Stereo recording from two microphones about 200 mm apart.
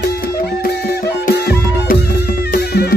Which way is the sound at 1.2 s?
50° left (ahead or behind).